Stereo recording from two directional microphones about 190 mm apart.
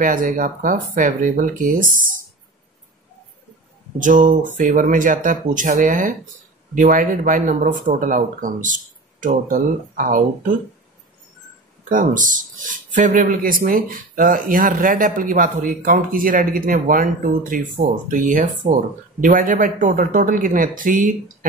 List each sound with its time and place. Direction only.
0.0 s speech: 45° right (ahead or behind)
4.0 s speech: 45° right (ahead or behind)
11.9 s speech: 45° right (ahead or behind)